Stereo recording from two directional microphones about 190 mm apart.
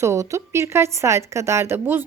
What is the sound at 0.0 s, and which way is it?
A woman's voice, 15° right (ahead or behind).